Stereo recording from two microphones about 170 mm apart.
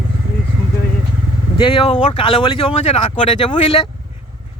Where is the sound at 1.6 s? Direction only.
30° left (ahead or behind).